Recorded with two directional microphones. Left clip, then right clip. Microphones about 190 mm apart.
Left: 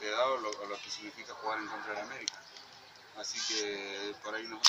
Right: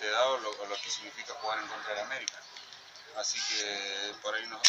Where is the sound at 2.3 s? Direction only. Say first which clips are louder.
Even; 35° left (ahead or behind).